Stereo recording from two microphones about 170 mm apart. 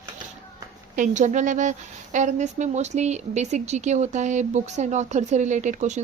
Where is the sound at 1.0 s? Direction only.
45° right (ahead or behind).